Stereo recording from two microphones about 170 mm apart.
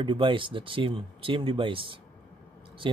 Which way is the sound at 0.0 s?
30° right (ahead or behind).